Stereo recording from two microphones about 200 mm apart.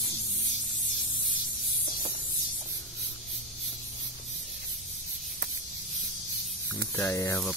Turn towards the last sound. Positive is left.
turn(degrees=15)  # may be behind; listen again after turning